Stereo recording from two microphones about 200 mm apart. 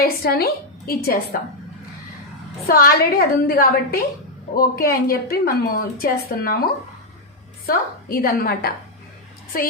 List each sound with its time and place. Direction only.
0.0 s a woman's voice: 50° left (ahead or behind)
2.6 s a woman's voice: 45° left (ahead or behind)
7.7 s a woman's voice: 50° left (ahead or behind)